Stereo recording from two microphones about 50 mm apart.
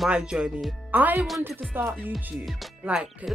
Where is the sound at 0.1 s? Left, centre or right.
Centre.